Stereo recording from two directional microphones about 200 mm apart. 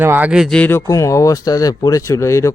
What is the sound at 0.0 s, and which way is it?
Speech, 10° right (ahead or behind).